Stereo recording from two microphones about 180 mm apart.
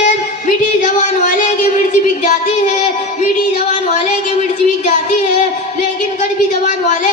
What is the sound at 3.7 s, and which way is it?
Music, 40° left (ahead or behind).